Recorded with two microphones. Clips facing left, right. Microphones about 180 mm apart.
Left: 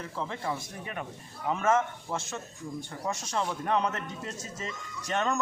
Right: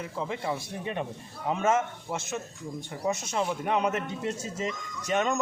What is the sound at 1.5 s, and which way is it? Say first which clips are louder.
Speech: right 1 dB; 20° right (ahead or behind).